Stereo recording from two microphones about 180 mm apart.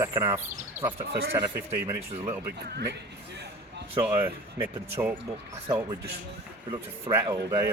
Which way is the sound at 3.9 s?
30° right (ahead or behind).